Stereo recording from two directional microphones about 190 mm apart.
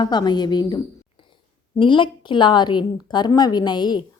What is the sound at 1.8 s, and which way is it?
A woman's voice, 25° left (ahead or behind).